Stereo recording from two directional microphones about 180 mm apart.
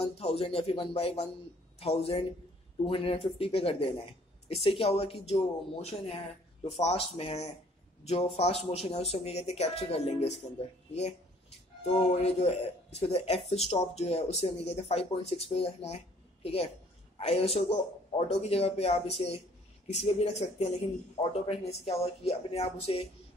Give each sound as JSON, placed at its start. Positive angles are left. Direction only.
{"t": 0.0, "sound": "speech", "side_deg": 35}
{"t": 17.2, "sound": "speech", "side_deg": 35}